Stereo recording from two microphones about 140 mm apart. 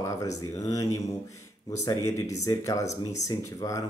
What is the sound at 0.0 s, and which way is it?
Speech, 25° left (ahead or behind).